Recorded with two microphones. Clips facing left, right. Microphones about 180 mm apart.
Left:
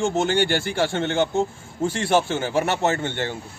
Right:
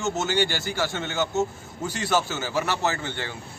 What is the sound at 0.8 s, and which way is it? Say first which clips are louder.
A man's voice: left 5 dB; 30° left (ahead or behind).